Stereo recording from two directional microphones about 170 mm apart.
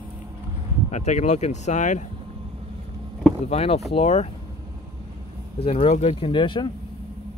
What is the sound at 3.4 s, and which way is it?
Speech, 35° left (ahead or behind).